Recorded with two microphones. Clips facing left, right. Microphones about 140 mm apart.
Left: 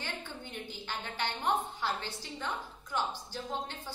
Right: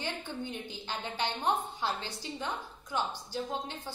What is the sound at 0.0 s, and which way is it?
A woman's voice, 20° right (ahead or behind).